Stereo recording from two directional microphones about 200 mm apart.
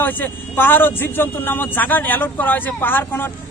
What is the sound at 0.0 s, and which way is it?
Speech, 10° left (ahead or behind).